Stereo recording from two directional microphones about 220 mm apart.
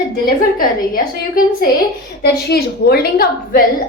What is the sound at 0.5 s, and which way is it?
A woman's voice, 40° left (ahead or behind).